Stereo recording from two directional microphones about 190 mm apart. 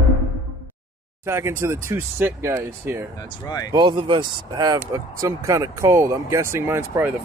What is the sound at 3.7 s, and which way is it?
Speech, 25° right (ahead or behind).